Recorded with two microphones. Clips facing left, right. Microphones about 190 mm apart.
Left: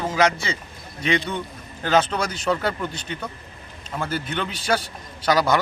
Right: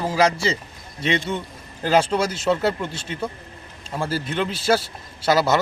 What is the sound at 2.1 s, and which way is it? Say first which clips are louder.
Speech: right 3 dB; 10° right (ahead or behind).